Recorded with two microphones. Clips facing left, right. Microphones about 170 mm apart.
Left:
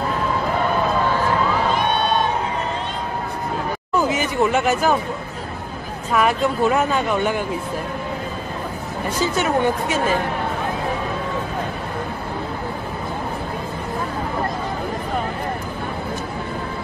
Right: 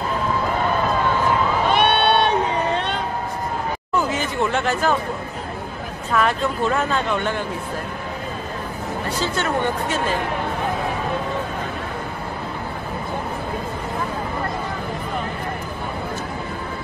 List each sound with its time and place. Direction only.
1.7 s a sound: 80° right
4.2 s speech: 10° left (ahead or behind)
6.1 s speech: 10° left (ahead or behind)
9.2 s speech: 10° left (ahead or behind)